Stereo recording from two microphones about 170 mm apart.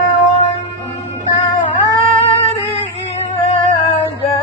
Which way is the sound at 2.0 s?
35° left (ahead or behind).